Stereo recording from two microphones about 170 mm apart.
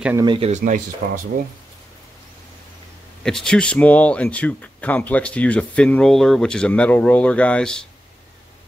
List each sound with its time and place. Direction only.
0.2 s speech: 25° right (ahead or behind)
0.5 s speech: 45° right (ahead or behind)
3.3 s speech: 5° left (ahead or behind)